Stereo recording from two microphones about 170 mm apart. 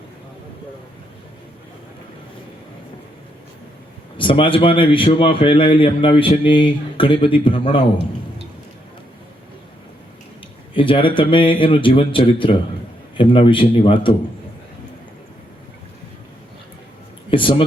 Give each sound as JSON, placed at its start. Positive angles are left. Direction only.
{"t": 4.2, "sound": "speech", "side_deg": 30}
{"t": 10.8, "sound": "speech", "side_deg": 30}
{"t": 17.3, "sound": "speech", "side_deg": 30}